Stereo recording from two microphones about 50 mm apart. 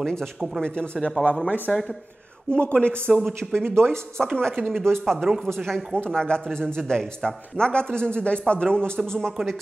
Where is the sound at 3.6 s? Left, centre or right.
Right.